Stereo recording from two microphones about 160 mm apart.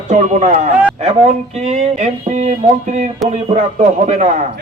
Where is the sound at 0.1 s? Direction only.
45° right (ahead or behind).